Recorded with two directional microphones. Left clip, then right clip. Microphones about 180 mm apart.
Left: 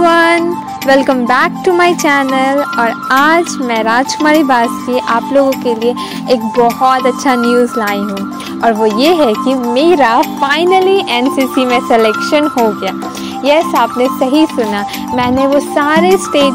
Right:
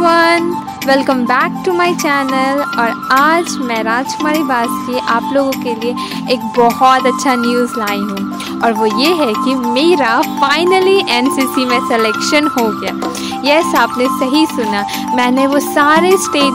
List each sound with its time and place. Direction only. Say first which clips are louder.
0.0 s music: left 1 dB; 15° left (ahead or behind)
0.8 s speech: left 3 dB; 15° left (ahead or behind)
6.5 s speech: right 2 dB; centre (ahead or behind)
7.4 s speech: left 4 dB; 15° left (ahead or behind)
8.6 s speech: left 2 dB; centre (ahead or behind)
8.9 s speech: left 3 dB; 15° left (ahead or behind)
11.7 s speech: left 4 dB; 15° left (ahead or behind)
12.3 s speech: left 2 dB; centre (ahead or behind)